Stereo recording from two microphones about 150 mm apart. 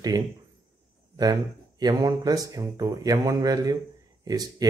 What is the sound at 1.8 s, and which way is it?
Speech, 25° right (ahead or behind).